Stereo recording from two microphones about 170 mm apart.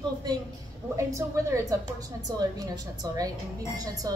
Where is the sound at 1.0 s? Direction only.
15° right (ahead or behind).